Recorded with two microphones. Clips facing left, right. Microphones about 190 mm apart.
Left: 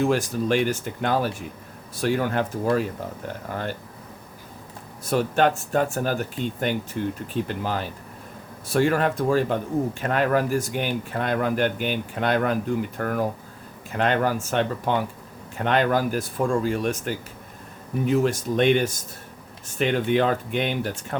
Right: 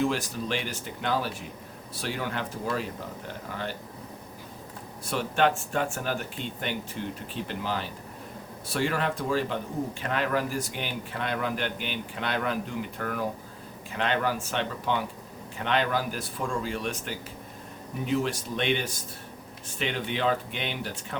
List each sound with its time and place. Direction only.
0.0 s speech: 45° left (ahead or behind)
5.0 s speech: 40° left (ahead or behind)